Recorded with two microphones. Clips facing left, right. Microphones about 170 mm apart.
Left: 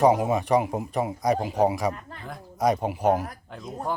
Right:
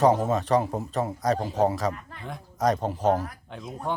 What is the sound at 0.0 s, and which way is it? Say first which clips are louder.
A man's voice: left 1 dB; 10° left (ahead or behind).